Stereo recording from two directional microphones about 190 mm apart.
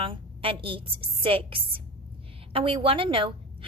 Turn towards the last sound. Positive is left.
turn(degrees=-25)  # may be behind; listen again after turning